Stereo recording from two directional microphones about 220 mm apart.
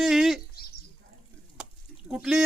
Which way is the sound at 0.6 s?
45° left (ahead or behind).